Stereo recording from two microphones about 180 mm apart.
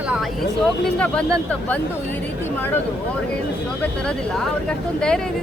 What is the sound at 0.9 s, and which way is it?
Speech, 5° left (ahead or behind).